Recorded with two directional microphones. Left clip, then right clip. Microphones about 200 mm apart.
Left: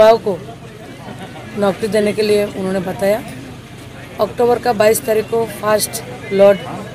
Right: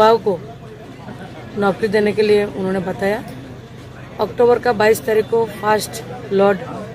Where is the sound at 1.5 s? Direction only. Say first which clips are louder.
Left 1 dB; 5° right (ahead or behind).